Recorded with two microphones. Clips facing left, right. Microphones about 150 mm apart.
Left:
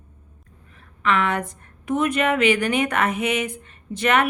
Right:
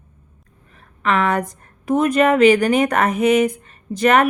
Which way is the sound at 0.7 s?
40° right (ahead or behind).